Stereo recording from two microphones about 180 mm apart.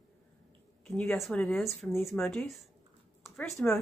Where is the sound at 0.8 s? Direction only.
5° left (ahead or behind).